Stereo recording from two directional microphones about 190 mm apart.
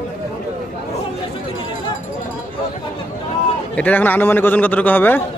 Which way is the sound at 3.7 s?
10° left (ahead or behind).